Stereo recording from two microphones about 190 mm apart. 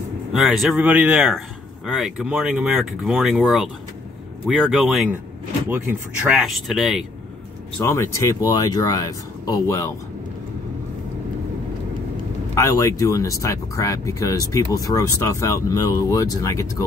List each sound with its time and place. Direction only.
0.3 s speech: centre (ahead or behind)
7.8 s speech: 15° left (ahead or behind)
12.5 s speech: 15° left (ahead or behind)